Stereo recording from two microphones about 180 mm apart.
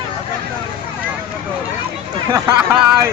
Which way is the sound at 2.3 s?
10° right (ahead or behind).